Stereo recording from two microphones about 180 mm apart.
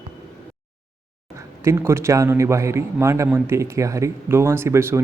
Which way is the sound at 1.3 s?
15° right (ahead or behind).